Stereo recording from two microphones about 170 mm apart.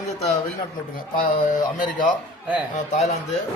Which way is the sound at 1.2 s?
50° left (ahead or behind).